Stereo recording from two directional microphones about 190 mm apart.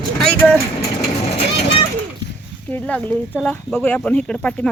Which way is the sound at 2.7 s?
10° left (ahead or behind).